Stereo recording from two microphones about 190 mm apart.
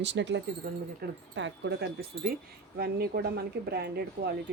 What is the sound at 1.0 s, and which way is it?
Speech, 55° right (ahead or behind).